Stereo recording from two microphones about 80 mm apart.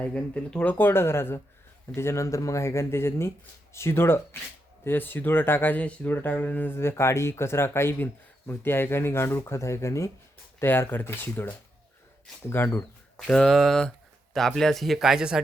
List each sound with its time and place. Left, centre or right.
0.0 s speech: centre
6.7 s speech: left
13.1 s speech: centre